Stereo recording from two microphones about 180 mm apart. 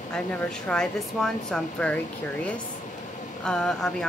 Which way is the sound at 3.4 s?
5° left (ahead or behind).